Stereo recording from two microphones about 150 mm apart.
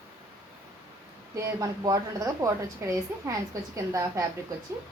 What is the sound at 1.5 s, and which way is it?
A woman's voice, 25° right (ahead or behind).